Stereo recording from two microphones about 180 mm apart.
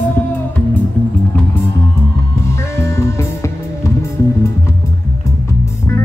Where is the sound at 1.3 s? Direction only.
10° left (ahead or behind).